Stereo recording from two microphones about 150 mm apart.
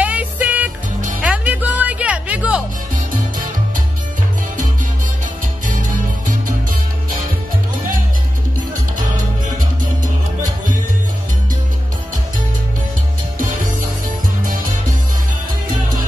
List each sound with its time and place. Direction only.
0.0 s music: 10° right (ahead or behind)
5.7 s music: 65° right (ahead or behind)
8.9 s music: 60° right (ahead or behind)
13.4 s music: 65° right (ahead or behind)